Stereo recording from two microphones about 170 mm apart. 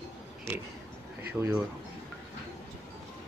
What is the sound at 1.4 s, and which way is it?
Speech, centre (ahead or behind).